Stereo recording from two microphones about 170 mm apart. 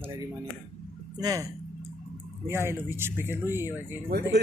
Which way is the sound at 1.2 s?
20° right (ahead or behind).